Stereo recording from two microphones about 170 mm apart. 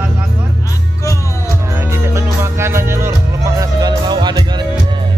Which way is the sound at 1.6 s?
15° right (ahead or behind).